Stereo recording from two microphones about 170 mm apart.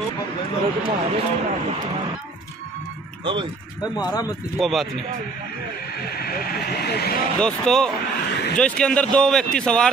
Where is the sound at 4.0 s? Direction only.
25° left (ahead or behind).